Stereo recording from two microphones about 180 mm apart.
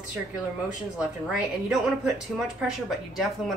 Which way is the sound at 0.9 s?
5° right (ahead or behind).